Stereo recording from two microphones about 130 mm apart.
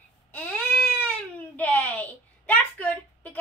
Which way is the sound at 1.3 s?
10° left (ahead or behind).